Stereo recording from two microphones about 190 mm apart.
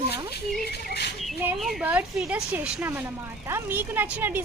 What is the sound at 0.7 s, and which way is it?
Speech, 60° left (ahead or behind).